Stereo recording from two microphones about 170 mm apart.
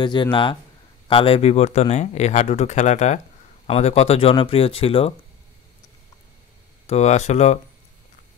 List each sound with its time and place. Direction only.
0.0 s speech: 30° left (ahead or behind)
6.9 s speech: 40° left (ahead or behind)